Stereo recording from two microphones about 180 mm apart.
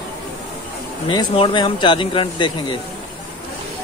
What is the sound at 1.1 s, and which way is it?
Speech, 25° left (ahead or behind).